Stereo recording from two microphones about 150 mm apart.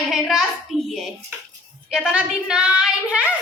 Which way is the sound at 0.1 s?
5° right (ahead or behind).